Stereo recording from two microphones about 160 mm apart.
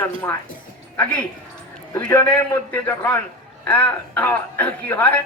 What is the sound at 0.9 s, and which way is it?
A woman's voice, 10° left (ahead or behind).